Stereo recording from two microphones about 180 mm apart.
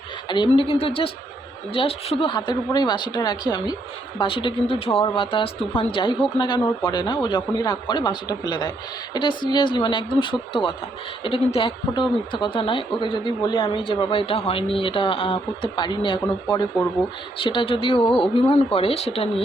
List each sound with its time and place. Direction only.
0.3 s speech: 25° left (ahead or behind)
17.4 s speech: 30° left (ahead or behind)